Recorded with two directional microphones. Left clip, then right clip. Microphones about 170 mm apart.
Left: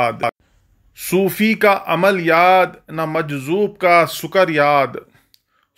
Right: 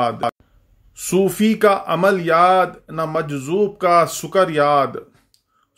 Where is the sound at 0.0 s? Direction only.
20° left (ahead or behind).